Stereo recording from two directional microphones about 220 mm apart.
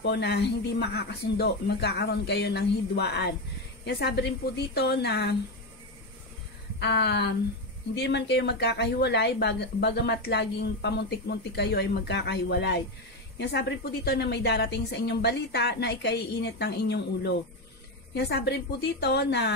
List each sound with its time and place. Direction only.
0.0 s speech: 50° left (ahead or behind)
6.8 s speech: 50° left (ahead or behind)